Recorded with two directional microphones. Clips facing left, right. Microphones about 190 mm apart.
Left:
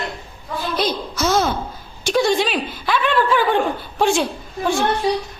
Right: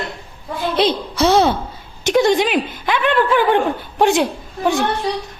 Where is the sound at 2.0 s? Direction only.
20° right (ahead or behind).